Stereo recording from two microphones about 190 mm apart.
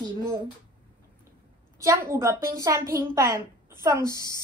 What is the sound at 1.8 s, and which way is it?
A woman's voice, 15° right (ahead or behind).